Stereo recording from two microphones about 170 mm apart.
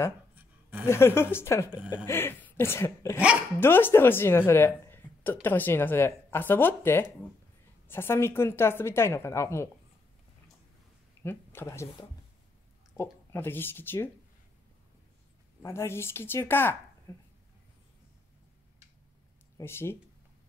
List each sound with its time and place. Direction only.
0.4 s a sound: 10° right (ahead or behind)
0.8 s a woman's voice: 15° left (ahead or behind)
11.2 s a woman's voice: 15° left (ahead or behind)
12.9 s speech: 15° left (ahead or behind)
15.6 s a woman's voice: 15° left (ahead or behind)
19.6 s a woman's voice: 15° left (ahead or behind)